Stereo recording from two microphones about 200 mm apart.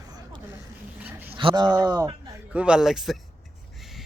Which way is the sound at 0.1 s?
20° right (ahead or behind).